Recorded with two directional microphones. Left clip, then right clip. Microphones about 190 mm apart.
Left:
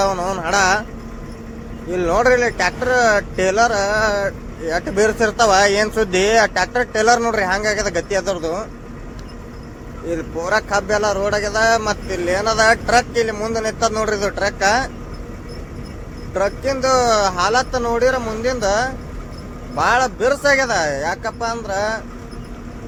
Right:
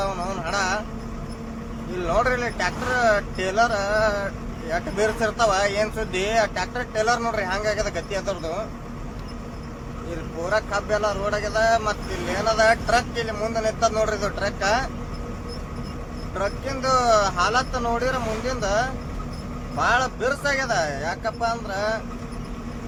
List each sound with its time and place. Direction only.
0.0 s music: 25° left (ahead or behind)
2.0 s speech: 25° left (ahead or behind)
10.4 s speech: 30° left (ahead or behind)
16.3 s speech: 25° left (ahead or behind)